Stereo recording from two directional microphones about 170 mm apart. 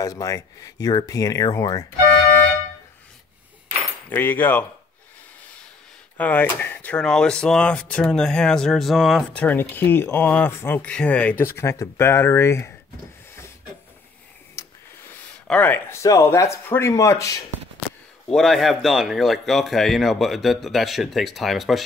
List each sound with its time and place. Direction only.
0.0 s speech: 20° left (ahead or behind)
4.1 s speech: 10° left (ahead or behind)
6.1 s speech: 10° left (ahead or behind)
9.4 s speech: 10° left (ahead or behind)
14.6 s a sound: 20° left (ahead or behind)
15.4 s speech: 10° left (ahead or behind)
18.3 s speech: centre (ahead or behind)